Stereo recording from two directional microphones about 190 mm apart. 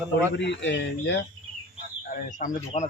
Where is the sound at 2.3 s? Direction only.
40° left (ahead or behind).